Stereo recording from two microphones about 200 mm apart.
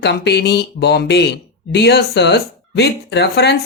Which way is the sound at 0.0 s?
55° left (ahead or behind).